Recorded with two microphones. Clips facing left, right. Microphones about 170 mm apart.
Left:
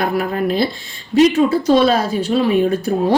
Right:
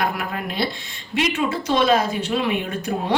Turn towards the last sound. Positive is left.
turn(degrees=35)  # may be behind; listen again after turning